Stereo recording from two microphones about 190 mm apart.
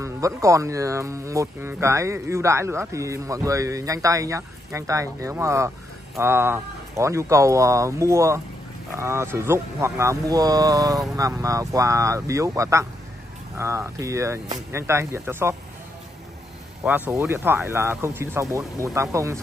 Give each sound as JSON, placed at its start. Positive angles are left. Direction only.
{"t": 0.0, "sound": "speech", "side_deg": -15}
{"t": 16.8, "sound": "speech", "side_deg": -10}